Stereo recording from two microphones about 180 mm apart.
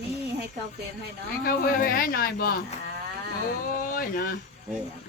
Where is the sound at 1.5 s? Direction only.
55° left (ahead or behind).